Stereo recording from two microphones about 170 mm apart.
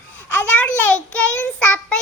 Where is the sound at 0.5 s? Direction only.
10° left (ahead or behind).